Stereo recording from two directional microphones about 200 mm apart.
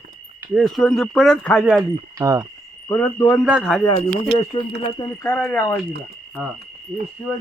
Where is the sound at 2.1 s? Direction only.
15° right (ahead or behind).